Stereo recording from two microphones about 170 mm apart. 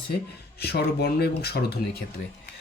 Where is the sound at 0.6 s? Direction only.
70° left (ahead or behind).